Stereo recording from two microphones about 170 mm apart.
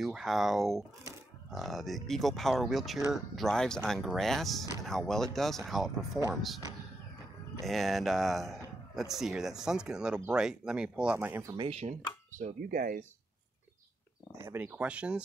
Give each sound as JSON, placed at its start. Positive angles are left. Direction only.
{"t": 0.0, "sound": "a man's voice", "side_deg": 0}
{"t": 7.6, "sound": "a man's voice", "side_deg": 0}
{"t": 11.5, "sound": "speech", "side_deg": -35}
{"t": 12.4, "sound": "speech", "side_deg": -55}
{"t": 14.3, "sound": "speech", "side_deg": -10}